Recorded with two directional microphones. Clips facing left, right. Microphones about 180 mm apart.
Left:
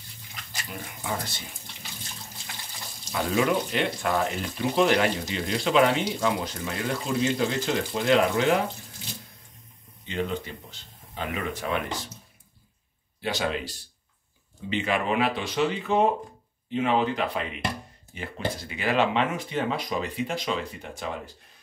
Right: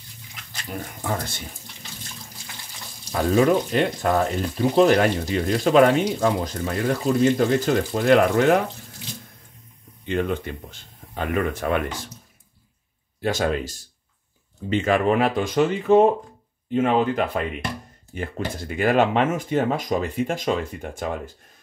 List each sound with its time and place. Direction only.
0.7 s a sound: 45° right (ahead or behind)
3.1 s speech: 40° right (ahead or behind)
10.0 s speech: 55° right (ahead or behind)
13.2 s speech: 45° right (ahead or behind)